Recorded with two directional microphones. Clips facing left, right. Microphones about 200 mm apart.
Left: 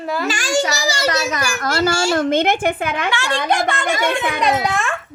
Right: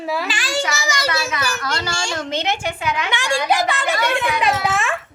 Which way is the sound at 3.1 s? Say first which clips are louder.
Right 1 dB; 15° right (ahead or behind).